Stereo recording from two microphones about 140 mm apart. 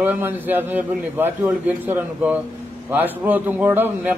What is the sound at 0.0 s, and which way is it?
A man's voice, 15° right (ahead or behind).